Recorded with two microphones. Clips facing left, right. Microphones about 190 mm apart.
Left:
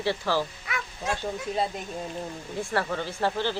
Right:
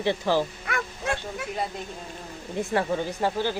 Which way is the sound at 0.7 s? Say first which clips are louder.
Right 3 dB; 50° right (ahead or behind).